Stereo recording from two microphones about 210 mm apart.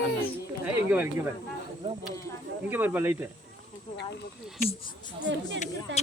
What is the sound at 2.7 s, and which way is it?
Speech, 10° right (ahead or behind).